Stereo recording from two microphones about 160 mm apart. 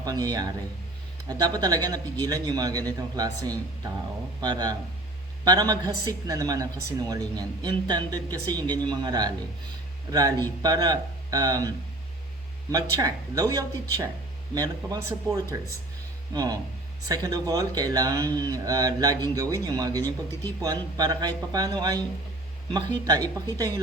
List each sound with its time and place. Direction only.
0.0 s a woman's voice: 25° right (ahead or behind)
12.7 s a woman's voice: 20° right (ahead or behind)